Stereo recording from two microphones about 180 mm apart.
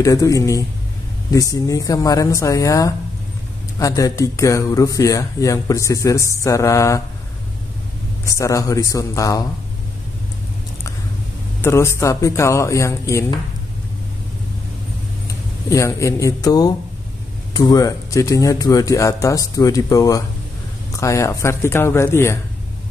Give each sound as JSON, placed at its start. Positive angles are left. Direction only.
{"t": 0.0, "sound": "speech", "side_deg": 20}
{"t": 8.3, "sound": "speech", "side_deg": 15}
{"t": 11.6, "sound": "speech", "side_deg": 15}
{"t": 15.2, "sound": "speech", "side_deg": 15}